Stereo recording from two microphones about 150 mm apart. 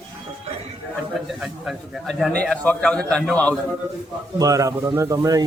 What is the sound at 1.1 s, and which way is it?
A man's voice, centre (ahead or behind).